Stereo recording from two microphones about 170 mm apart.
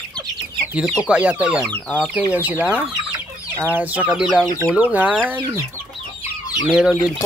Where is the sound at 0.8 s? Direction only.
5° right (ahead or behind).